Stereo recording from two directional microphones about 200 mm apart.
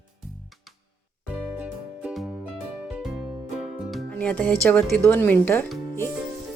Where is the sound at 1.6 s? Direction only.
5° right (ahead or behind).